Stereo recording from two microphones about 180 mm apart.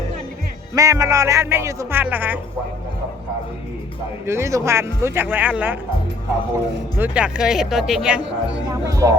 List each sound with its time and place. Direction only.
0.7 s speech: 20° right (ahead or behind)
4.3 s speech: 15° right (ahead or behind)
7.0 s speech: 5° right (ahead or behind)
8.7 s speech: 20° right (ahead or behind)